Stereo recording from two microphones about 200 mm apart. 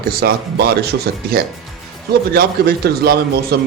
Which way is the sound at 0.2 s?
55° right (ahead or behind).